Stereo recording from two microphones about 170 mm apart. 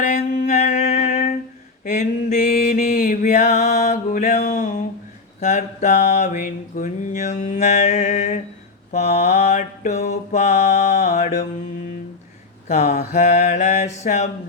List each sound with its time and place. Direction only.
0.0 s music: 40° left (ahead or behind)
1.1 s a sound: 60° left (ahead or behind)
1.8 s mantra: 45° left (ahead or behind)
4.4 s a sound: 55° left (ahead or behind)
5.4 s mantra: 45° left (ahead or behind)
12.6 s speech: 40° left (ahead or behind)
13.1 s mantra: 45° left (ahead or behind)